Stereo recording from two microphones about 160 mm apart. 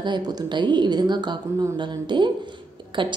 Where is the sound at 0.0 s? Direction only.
25° right (ahead or behind).